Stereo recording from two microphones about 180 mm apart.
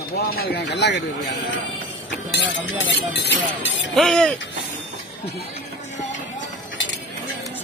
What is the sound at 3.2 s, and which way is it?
Speech, 75° left (ahead or behind).